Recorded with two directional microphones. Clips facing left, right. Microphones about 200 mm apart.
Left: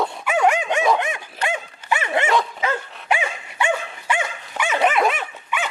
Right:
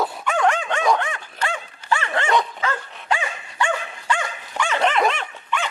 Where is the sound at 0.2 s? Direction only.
10° left (ahead or behind).